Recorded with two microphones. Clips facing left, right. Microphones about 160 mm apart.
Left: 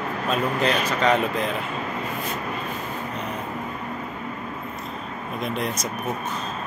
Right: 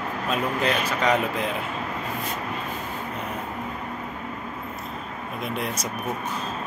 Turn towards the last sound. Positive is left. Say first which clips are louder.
# left 2 dB
turn(degrees=-10)  # may be behind; listen again after turning